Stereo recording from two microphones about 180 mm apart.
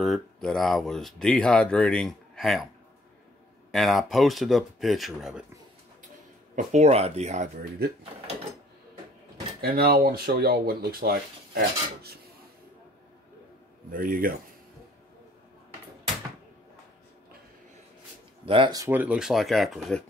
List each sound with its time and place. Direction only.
0.0 s speech: centre (ahead or behind)
3.7 s speech: centre (ahead or behind)
6.5 s speech: 40° right (ahead or behind)
9.6 s speech: 55° right (ahead or behind)
13.9 s speech: 50° right (ahead or behind)
18.4 s speech: 30° right (ahead or behind); by 20.0 s centre (ahead or behind)